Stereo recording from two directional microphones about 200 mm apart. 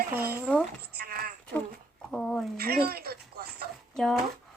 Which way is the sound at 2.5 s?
50° right (ahead or behind).